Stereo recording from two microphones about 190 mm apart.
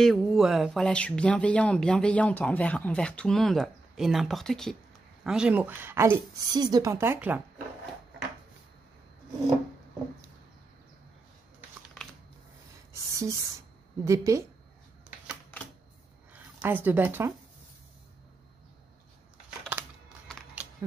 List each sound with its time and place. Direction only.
0.0 s speech: centre (ahead or behind)
12.9 s a sound: 15° right (ahead or behind)
14.0 s speech: 15° right (ahead or behind)
16.3 s speech: 10° right (ahead or behind)